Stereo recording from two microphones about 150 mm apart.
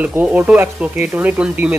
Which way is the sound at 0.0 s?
10° right (ahead or behind).